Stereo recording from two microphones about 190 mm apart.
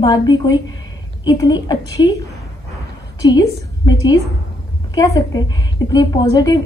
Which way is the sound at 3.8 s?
20° left (ahead or behind).